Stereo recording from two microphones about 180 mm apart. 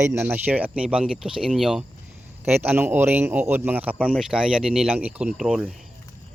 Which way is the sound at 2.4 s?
10° right (ahead or behind).